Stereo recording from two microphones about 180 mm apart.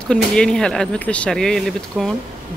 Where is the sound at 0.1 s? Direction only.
5° left (ahead or behind).